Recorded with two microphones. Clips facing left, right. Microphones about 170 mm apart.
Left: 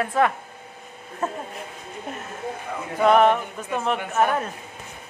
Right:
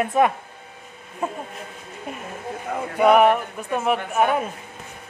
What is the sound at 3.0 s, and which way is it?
Speech, 10° right (ahead or behind).